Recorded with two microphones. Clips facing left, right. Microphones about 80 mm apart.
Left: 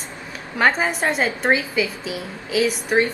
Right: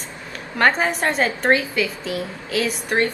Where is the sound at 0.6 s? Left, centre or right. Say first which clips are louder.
Right 1 dB; centre.